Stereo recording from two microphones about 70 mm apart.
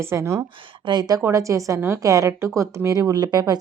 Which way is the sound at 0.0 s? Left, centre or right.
Right.